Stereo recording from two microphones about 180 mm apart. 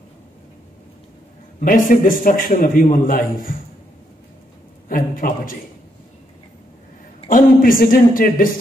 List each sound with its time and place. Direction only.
1.6 s a man's voice: 50° left (ahead or behind)
4.8 s a man's voice: 50° left (ahead or behind)
7.2 s a man's voice: 50° left (ahead or behind)